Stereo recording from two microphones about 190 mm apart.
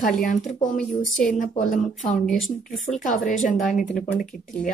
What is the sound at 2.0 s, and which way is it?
Speech, 40° left (ahead or behind).